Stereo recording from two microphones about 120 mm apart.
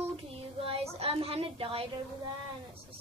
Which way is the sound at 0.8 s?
55° right (ahead or behind).